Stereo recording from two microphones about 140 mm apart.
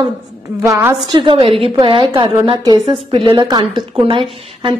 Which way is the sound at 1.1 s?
35° right (ahead or behind).